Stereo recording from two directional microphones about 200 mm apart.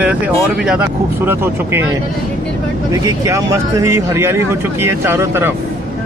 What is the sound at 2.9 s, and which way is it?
Speech, 15° right (ahead or behind).